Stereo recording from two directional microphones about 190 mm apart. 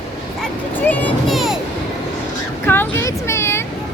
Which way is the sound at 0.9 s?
10° left (ahead or behind).